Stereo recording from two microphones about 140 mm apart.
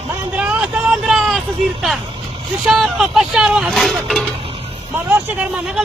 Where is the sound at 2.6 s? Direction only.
Centre (ahead or behind).